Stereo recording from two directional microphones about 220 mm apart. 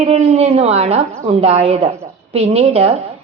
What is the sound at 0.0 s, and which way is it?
A woman's voice, 30° right (ahead or behind).